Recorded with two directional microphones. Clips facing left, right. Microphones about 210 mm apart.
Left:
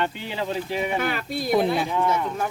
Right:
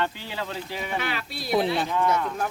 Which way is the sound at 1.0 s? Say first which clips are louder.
Left 5 dB; 45° left (ahead or behind).